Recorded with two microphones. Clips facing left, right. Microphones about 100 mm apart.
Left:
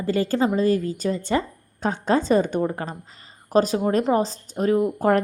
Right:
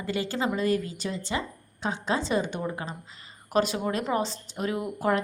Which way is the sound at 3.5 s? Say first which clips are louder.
Left 6 dB; 35° left (ahead or behind).